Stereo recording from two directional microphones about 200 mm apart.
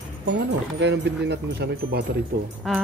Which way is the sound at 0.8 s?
60° right (ahead or behind).